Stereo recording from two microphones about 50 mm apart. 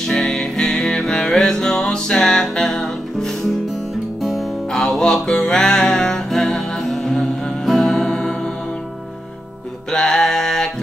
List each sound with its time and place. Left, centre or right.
0.0 s music: centre
9.8 s music: centre